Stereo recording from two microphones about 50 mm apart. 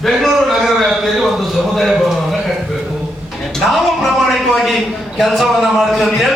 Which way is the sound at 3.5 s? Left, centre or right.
Centre.